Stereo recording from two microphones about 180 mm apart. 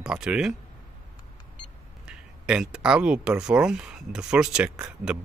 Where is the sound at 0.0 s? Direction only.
5° right (ahead or behind).